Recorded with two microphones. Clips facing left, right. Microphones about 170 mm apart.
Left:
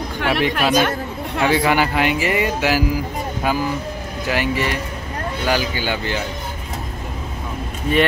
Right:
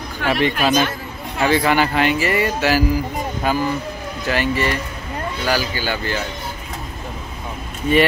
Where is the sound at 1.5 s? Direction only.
10° left (ahead or behind).